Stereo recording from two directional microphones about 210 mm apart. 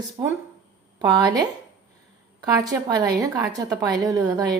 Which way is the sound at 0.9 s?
20° right (ahead or behind).